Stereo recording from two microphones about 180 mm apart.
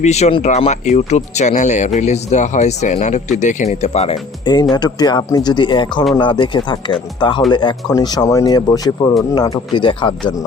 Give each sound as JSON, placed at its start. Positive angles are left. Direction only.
{"t": 0.0, "sound": "speech", "side_deg": 40}
{"t": 4.7, "sound": "speech", "side_deg": 20}